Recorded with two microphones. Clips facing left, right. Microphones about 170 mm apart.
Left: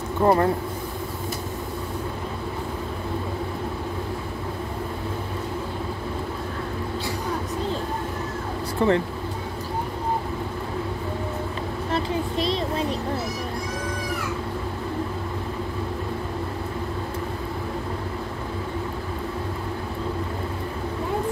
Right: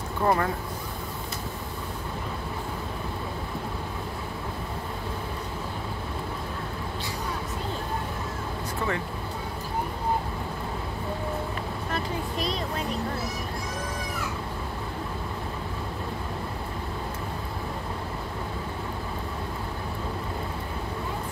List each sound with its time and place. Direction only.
0.2 s speech: 30° left (ahead or behind)
8.8 s speech: 30° left (ahead or behind)
11.9 s a sound: 30° left (ahead or behind)